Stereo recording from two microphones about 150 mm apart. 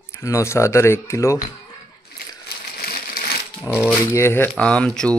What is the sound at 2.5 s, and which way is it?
Crumpling, 90° left.